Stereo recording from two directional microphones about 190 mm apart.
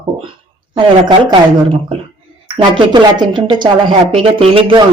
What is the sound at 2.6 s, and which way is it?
A woman's voice, 25° right (ahead or behind).